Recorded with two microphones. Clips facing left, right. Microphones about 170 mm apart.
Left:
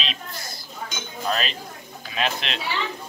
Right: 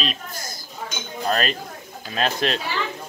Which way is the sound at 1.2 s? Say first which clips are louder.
Right 3 dB; 45° right (ahead or behind).